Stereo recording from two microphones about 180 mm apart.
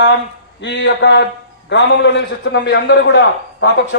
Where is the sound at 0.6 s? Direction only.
80° left.